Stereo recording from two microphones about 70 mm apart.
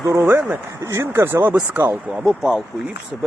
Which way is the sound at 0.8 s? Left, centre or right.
Right.